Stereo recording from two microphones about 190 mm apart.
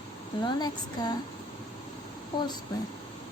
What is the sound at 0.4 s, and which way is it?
Speech, 20° left (ahead or behind).